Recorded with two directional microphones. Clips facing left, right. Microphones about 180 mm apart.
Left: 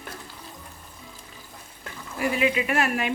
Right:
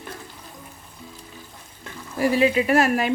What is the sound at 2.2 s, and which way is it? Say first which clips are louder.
Speech: right 5 dB; 35° right (ahead or behind).